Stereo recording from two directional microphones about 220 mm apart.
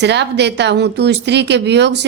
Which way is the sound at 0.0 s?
50° right (ahead or behind).